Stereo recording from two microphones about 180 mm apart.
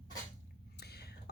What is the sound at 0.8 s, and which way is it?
Whispering, 65° left (ahead or behind).